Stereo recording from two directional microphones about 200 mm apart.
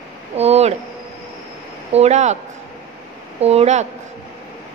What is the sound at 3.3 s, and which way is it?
Speech, 30° right (ahead or behind).